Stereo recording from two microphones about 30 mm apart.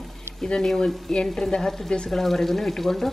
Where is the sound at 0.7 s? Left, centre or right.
Centre.